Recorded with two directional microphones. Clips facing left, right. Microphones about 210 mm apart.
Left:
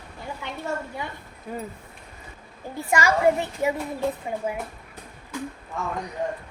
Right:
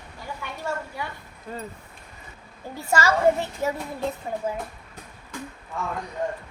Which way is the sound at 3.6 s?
15° left (ahead or behind).